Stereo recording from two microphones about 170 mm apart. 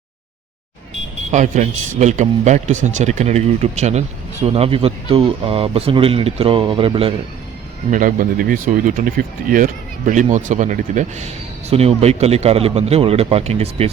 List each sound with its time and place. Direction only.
1.3 s speech: 45° right (ahead or behind)
7.9 s speech: 50° right (ahead or behind)